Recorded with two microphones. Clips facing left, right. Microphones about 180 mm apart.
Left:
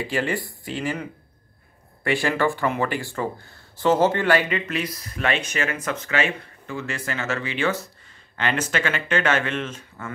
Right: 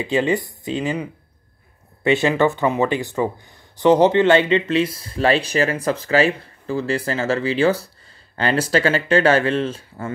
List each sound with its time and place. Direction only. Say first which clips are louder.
0.0 s speech: right 6 dB; 20° right (ahead or behind)
2.0 s speech: right 5 dB; 20° right (ahead or behind)